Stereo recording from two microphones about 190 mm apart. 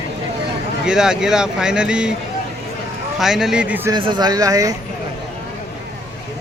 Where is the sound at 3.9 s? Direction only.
25° right (ahead or behind).